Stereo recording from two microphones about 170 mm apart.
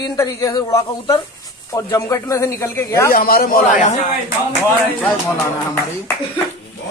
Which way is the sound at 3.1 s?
60° left (ahead or behind).